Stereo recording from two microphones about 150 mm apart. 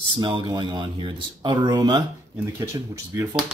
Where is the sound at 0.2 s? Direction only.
30° right (ahead or behind).